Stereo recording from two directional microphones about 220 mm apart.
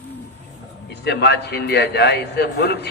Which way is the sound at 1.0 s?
50° left (ahead or behind).